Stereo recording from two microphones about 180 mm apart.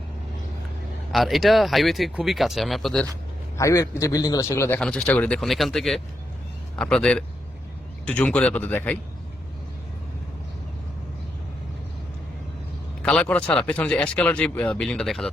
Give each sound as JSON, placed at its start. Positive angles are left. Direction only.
{"t": 1.1, "sound": "speech", "side_deg": 0}
{"t": 3.6, "sound": "speech", "side_deg": 15}
{"t": 4.8, "sound": "speech", "side_deg": 5}
{"t": 13.0, "sound": "speech", "side_deg": 5}